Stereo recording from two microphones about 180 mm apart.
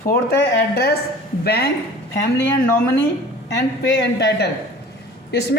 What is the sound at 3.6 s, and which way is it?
Speech, 70° left (ahead or behind).